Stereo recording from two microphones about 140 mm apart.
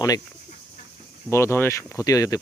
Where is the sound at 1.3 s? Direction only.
15° left (ahead or behind).